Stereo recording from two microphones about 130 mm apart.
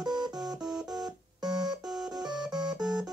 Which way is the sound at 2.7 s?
5° right (ahead or behind).